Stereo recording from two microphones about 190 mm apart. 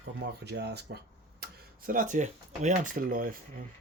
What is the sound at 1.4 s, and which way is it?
Speech, 45° right (ahead or behind).